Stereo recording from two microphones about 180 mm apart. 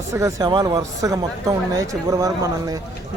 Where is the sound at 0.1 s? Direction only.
15° right (ahead or behind).